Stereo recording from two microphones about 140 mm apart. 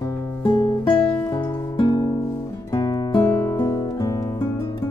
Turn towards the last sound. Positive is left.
turn(degrees=25)  # may be behind; listen again after turning